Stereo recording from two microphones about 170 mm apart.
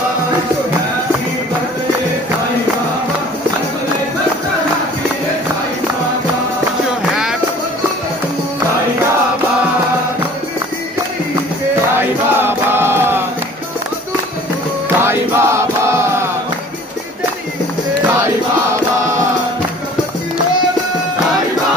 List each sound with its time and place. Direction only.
12.0 s chant: 10° right (ahead or behind)
15.0 s music: 15° right (ahead or behind)
18.2 s music: 15° right (ahead or behind)